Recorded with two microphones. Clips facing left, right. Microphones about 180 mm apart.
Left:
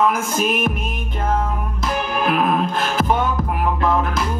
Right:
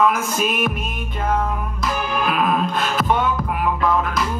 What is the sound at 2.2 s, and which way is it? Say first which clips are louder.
Music: left 2 dB; 25° left (ahead or behind).